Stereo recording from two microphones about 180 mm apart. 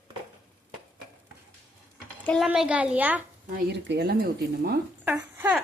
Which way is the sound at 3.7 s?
65° right (ahead or behind).